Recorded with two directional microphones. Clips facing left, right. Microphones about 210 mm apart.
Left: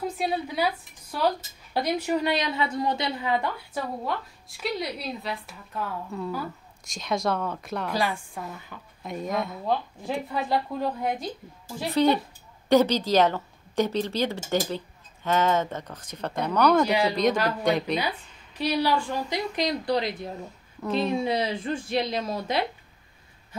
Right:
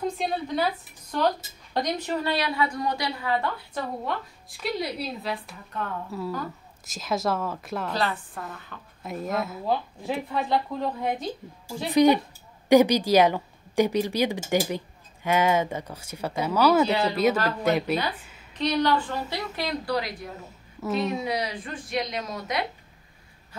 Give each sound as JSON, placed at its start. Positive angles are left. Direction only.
{"t": 0.0, "sound": "a woman's voice", "side_deg": 5}
{"t": 3.7, "sound": "a woman's voice", "side_deg": 0}
{"t": 7.9, "sound": "a woman's voice", "side_deg": 10}
{"t": 9.0, "sound": "a woman's voice", "side_deg": 0}
{"t": 11.9, "sound": "speech", "side_deg": -15}
{"t": 16.8, "sound": "a woman's voice", "side_deg": 15}
{"t": 17.1, "sound": "speech", "side_deg": -5}
{"t": 18.5, "sound": "a woman's voice", "side_deg": 10}
{"t": 20.8, "sound": "a woman's voice", "side_deg": 0}
{"t": 21.2, "sound": "a woman's voice", "side_deg": 25}